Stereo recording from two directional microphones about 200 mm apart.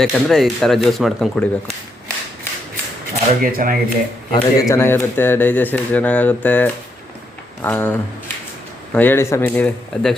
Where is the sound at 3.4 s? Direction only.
45° right (ahead or behind).